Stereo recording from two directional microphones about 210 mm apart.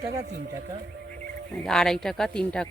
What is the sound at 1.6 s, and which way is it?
Speech, centre (ahead or behind).